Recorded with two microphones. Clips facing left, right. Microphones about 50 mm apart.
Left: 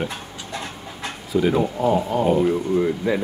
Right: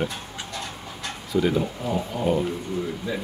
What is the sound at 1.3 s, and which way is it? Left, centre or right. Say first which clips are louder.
Speech: left 4 dB; centre.